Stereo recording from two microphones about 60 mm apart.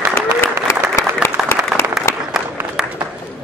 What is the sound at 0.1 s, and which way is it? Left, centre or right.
Applause, left.